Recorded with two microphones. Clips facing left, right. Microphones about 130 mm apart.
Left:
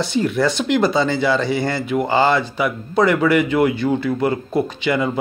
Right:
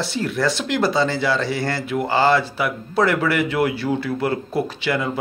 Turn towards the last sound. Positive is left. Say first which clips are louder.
# left 3 dB
turn(degrees=0)  # may be behind; listen again after turning